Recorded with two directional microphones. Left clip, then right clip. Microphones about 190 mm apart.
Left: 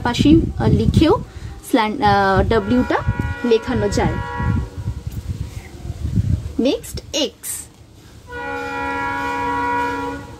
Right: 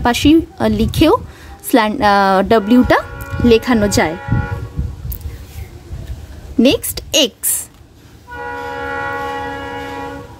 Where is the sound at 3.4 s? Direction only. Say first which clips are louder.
Right 5 dB; 40° right (ahead or behind).